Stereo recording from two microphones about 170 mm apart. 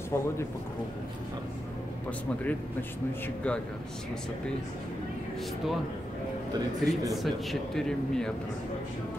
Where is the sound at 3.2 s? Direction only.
5° left (ahead or behind).